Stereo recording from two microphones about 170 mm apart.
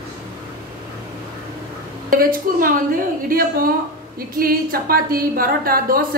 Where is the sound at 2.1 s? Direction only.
55° right (ahead or behind).